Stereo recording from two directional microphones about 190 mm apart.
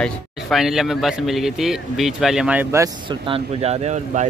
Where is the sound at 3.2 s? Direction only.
30° right (ahead or behind).